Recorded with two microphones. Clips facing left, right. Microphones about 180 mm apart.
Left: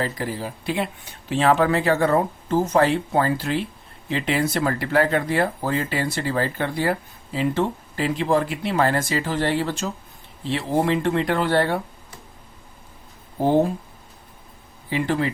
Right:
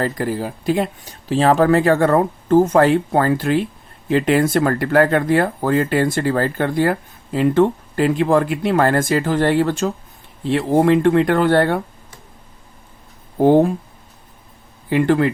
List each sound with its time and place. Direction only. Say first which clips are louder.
0.0 s speech: right 6 dB; 50° right (ahead or behind)
14.8 s speech: right 7 dB; 55° right (ahead or behind)